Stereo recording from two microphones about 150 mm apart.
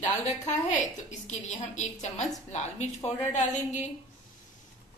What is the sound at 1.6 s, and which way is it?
A woman's voice, 50° left (ahead or behind).